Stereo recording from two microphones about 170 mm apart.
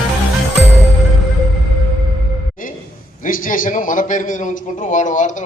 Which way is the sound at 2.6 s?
55° left (ahead or behind).